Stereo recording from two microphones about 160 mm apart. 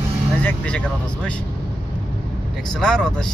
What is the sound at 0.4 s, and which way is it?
Speech, 10° left (ahead or behind).